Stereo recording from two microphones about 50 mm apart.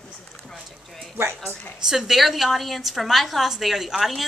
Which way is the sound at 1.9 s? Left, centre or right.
Centre.